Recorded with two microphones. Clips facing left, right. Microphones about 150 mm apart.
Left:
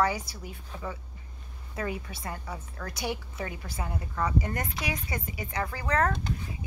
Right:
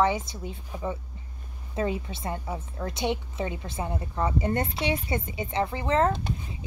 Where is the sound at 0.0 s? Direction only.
25° right (ahead or behind).